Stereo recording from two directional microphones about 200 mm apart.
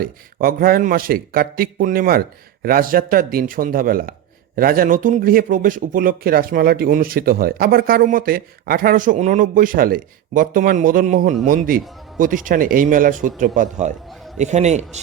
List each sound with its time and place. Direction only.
0.0 s a man's voice: 45° right (ahead or behind)